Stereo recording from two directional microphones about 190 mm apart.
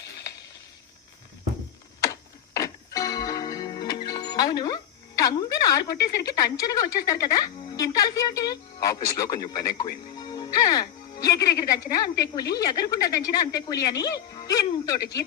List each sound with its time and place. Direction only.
2.0 s music: 15° left (ahead or behind)
11.2 s speech: 20° left (ahead or behind)